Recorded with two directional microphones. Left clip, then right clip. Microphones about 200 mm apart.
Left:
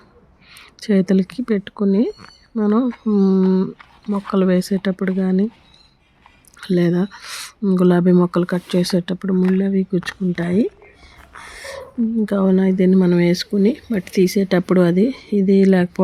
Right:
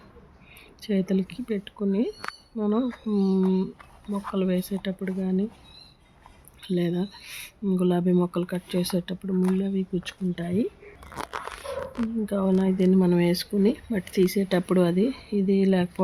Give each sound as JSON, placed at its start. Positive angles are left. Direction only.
{"t": 0.8, "sound": "speech", "side_deg": 15}
{"t": 6.6, "sound": "speech", "side_deg": 20}
{"t": 12.2, "sound": "speech", "side_deg": 15}